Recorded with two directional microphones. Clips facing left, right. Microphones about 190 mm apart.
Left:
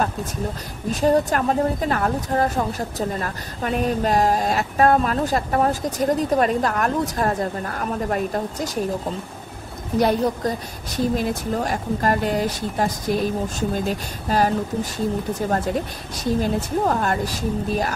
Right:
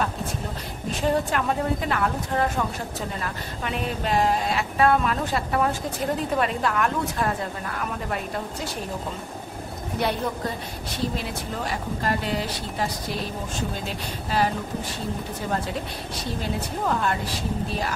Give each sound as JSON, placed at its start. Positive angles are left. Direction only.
{"t": 1.0, "sound": "a woman's voice", "side_deg": 40}
{"t": 9.9, "sound": "a woman's voice", "side_deg": 40}
{"t": 16.3, "sound": "a woman's voice", "side_deg": 45}